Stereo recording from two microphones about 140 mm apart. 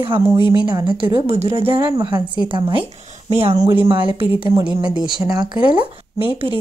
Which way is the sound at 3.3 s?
45° right (ahead or behind).